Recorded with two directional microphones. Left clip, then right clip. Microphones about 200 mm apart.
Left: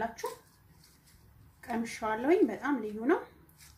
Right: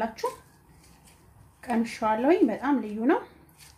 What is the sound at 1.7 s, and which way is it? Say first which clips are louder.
Speech: right 7 dB; 50° right (ahead or behind).